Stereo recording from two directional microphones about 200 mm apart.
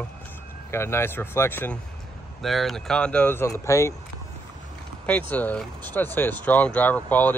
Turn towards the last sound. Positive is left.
turn(degrees=10)  # may be behind; listen again after turning